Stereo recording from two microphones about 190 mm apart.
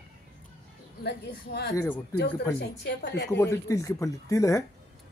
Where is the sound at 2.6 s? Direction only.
65° left (ahead or behind).